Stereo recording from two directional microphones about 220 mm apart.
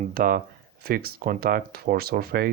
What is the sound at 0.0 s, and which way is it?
Speech, 40° right (ahead or behind).